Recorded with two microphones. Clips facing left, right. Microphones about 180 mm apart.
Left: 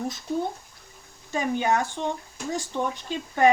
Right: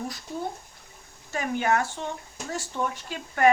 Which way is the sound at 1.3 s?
20° left (ahead or behind).